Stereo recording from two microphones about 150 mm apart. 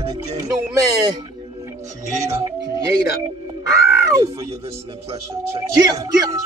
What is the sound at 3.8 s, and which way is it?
Crow, 20° right (ahead or behind).